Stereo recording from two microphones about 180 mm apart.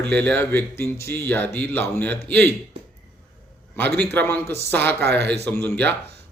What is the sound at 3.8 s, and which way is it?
Speech, 65° right (ahead or behind).